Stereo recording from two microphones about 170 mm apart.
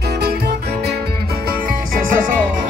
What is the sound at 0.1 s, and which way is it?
Music, 70° right (ahead or behind).